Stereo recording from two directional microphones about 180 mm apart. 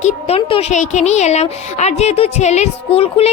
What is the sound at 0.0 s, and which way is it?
A woman's voice, 35° left (ahead or behind).